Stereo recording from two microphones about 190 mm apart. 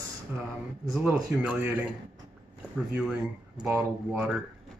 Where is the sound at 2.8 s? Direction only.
5° right (ahead or behind).